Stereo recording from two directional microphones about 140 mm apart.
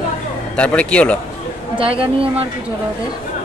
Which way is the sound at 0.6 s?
10° left (ahead or behind).